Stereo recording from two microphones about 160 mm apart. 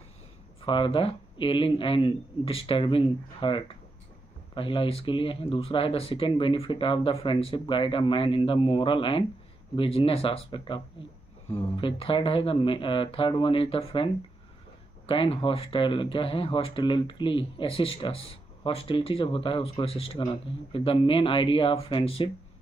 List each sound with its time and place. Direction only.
0.6 s speech: 35° left (ahead or behind)